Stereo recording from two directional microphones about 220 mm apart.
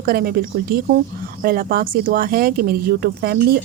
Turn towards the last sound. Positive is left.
turn(degrees=-45)  # may be behind; listen again after turning